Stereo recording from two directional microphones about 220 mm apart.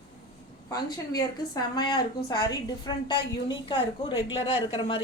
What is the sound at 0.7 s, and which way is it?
A woman's voice, 15° left (ahead or behind).